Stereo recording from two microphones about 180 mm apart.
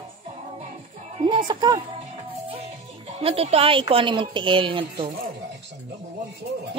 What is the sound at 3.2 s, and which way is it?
A woman's voice, 35° right (ahead or behind).